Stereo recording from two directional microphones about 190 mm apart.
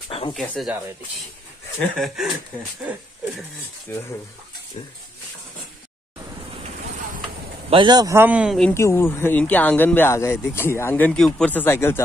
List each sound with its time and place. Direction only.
0.3 s speech: centre (ahead or behind)
1.8 s speech: centre (ahead or behind)
3.9 s speech: 10° left (ahead or behind)
4.8 s speech: 35° left (ahead or behind)
7.7 s a man's voice: 20° right (ahead or behind); by 8.7 s centre (ahead or behind)
8.7 s speech: 15° left (ahead or behind)